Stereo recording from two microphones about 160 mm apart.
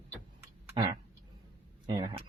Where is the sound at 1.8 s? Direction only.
25° right (ahead or behind).